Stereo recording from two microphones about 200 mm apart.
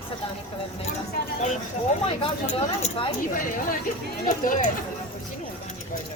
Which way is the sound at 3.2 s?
45° left (ahead or behind).